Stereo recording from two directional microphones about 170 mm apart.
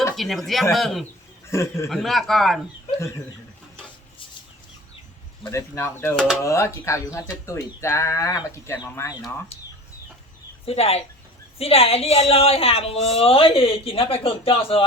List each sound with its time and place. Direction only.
0.2 s speech: centre (ahead or behind)
1.5 s speech: 15° left (ahead or behind)
1.9 s speech: centre (ahead or behind)
5.5 s speech: 15° left (ahead or behind)
6.1 s speech: centre (ahead or behind)
6.4 s speech: 15° left (ahead or behind)
10.7 s speech: 35° left (ahead or behind)